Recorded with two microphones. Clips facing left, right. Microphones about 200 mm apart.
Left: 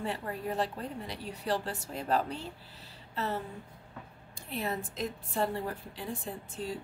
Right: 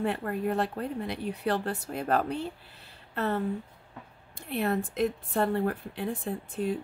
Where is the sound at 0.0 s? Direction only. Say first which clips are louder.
Right 6 dB; 60° right (ahead or behind).